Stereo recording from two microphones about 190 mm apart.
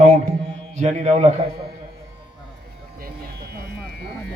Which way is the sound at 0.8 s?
35° right (ahead or behind).